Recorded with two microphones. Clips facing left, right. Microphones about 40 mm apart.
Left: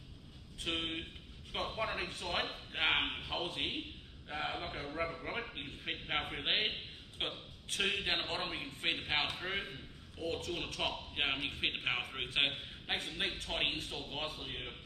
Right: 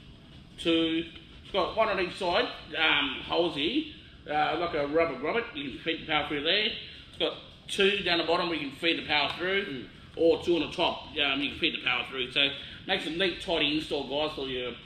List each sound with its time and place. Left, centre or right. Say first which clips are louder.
0.6 s speech: right 12 dB; right